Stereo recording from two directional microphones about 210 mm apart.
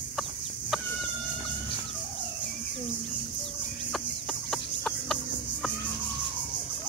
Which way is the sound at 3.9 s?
Centre (ahead or behind).